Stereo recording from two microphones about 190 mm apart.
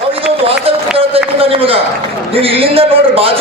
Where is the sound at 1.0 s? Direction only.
30° right (ahead or behind).